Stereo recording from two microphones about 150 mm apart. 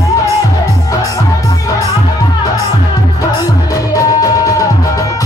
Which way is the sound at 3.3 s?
20° left (ahead or behind).